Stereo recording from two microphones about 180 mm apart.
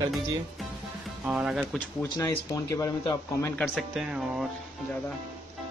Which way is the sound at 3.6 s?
Centre (ahead or behind).